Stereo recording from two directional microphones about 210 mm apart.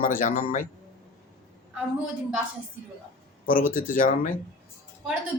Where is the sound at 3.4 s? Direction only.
40° left (ahead or behind).